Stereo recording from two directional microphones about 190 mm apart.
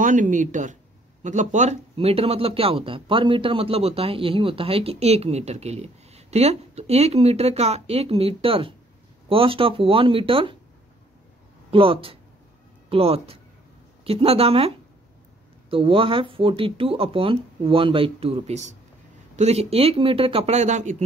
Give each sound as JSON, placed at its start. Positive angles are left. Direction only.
{"t": 0.0, "sound": "speech", "side_deg": -45}
{"t": 11.7, "sound": "speech", "side_deg": -30}
{"t": 15.7, "sound": "speech", "side_deg": -30}